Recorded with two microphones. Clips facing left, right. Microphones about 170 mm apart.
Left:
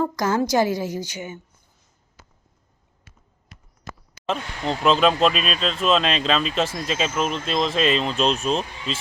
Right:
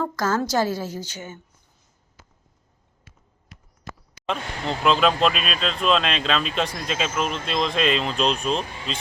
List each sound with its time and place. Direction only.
0.0 s a woman's voice: 15° left (ahead or behind)
4.8 s speech: centre (ahead or behind)